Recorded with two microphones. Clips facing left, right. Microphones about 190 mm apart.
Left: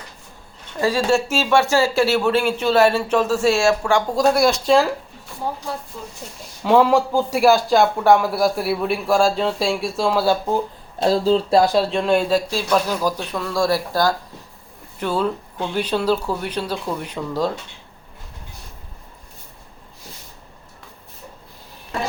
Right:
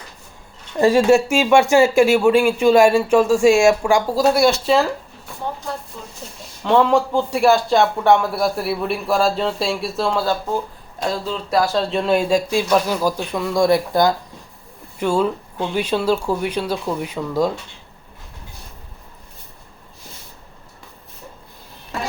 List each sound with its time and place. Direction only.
0.8 s speech: 25° right (ahead or behind); by 4.9 s centre (ahead or behind)
6.7 s a man's voice: 5° left (ahead or behind)
11.0 s speech: 30° left (ahead or behind)
11.6 s speech: 15° left (ahead or behind)
11.9 s speech: 5° right (ahead or behind)